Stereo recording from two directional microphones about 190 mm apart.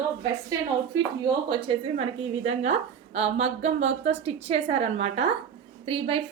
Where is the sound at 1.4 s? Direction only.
30° right (ahead or behind).